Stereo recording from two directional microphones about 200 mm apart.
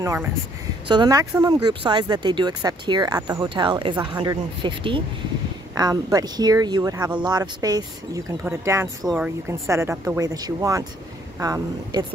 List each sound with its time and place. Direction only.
0.0 s speech: 15° right (ahead or behind)